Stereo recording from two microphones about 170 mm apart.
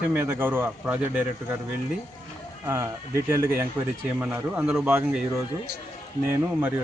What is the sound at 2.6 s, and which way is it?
A man's voice, 15° right (ahead or behind).